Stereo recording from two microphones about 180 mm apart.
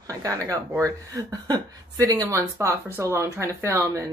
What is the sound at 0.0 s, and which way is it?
A woman's voice, 20° right (ahead or behind).